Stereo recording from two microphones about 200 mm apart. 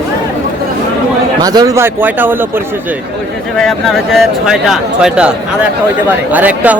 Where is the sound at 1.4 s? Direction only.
20° right (ahead or behind).